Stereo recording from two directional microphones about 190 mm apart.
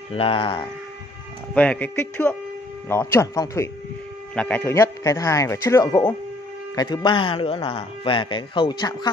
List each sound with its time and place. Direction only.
0.1 s speech: 30° left (ahead or behind)
1.5 s speech: 5° left (ahead or behind)